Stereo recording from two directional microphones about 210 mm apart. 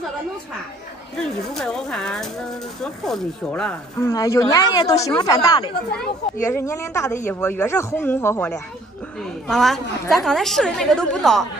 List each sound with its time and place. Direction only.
1.1 s a woman's voice: centre (ahead or behind)
4.1 s a woman's voice: 20° left (ahead or behind)